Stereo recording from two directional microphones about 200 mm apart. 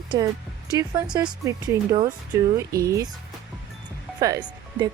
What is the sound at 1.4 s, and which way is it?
Speech, 20° right (ahead or behind).